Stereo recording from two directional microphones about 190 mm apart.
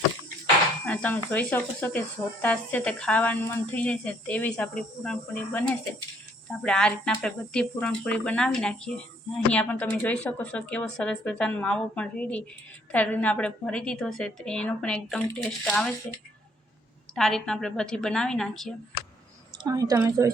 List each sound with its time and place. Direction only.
0.9 s a woman's voice: 10° left (ahead or behind)
17.2 s a woman's voice: centre (ahead or behind)
19.6 s a woman's voice: 20° right (ahead or behind)